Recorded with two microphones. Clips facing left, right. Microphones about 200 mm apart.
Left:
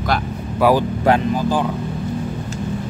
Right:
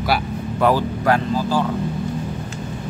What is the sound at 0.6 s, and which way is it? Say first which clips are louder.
Speech: left 3 dB; 10° left (ahead or behind).